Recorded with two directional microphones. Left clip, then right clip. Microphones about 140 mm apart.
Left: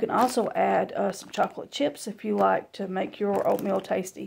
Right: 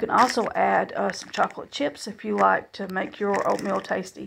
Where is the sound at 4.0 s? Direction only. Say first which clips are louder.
Left 1 dB; 35° left (ahead or behind).